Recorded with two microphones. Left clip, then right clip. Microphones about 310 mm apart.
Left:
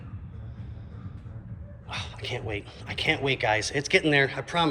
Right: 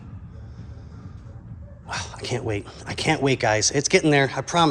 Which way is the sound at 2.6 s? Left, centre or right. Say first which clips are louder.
Even; right.